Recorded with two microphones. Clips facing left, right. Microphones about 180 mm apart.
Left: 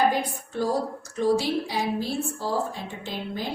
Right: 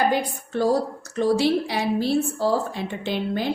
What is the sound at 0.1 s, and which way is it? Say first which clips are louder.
A woman's voice: right 4 dB; 70° right (ahead or behind).